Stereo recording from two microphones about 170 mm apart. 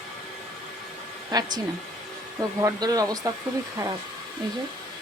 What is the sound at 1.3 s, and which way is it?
Speech, 25° right (ahead or behind).